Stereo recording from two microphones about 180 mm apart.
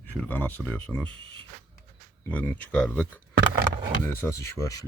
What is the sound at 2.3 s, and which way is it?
Speech, 10° left (ahead or behind).